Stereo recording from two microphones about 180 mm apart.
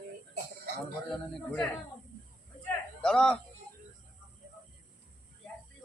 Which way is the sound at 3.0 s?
5° left (ahead or behind).